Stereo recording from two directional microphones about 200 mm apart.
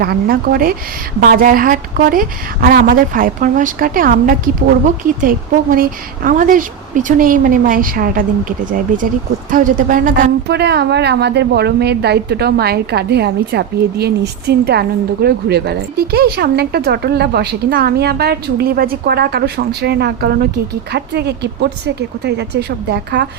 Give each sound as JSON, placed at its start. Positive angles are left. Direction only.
{"t": 0.0, "sound": "a woman's voice", "side_deg": -50}